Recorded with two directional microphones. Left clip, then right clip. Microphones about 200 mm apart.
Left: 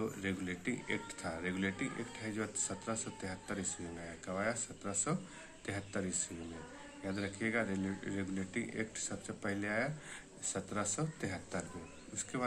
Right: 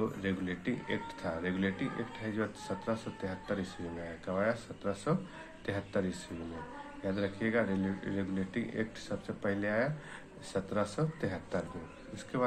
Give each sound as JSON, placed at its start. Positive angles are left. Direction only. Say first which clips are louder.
{"t": 0.0, "sound": "speech", "louder": "right 4 dB", "side_deg": 15}